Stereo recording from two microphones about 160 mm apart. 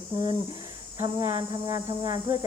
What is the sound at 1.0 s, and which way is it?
Speech, 20° right (ahead or behind).